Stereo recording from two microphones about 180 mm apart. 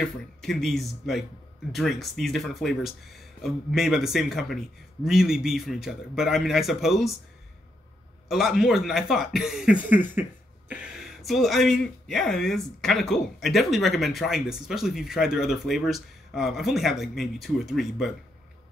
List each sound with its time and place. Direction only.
0.0 s speech: centre (ahead or behind)
8.3 s speech: centre (ahead or behind)